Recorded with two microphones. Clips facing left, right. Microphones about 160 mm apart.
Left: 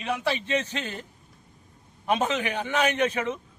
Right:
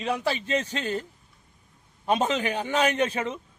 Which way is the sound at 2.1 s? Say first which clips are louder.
Right 1 dB; 30° right (ahead or behind).